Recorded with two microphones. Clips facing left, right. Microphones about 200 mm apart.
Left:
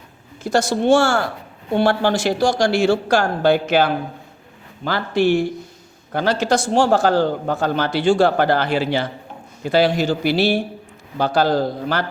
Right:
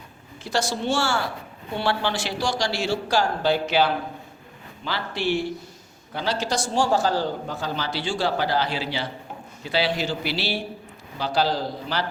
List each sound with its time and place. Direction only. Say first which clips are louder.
0.4 s speech: left 8 dB; 45° left (ahead or behind)